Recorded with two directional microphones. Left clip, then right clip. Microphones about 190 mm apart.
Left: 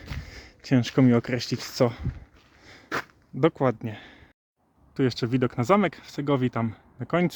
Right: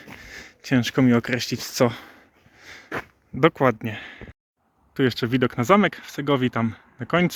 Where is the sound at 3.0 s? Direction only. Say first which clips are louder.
Right 5 dB; 5° left (ahead or behind).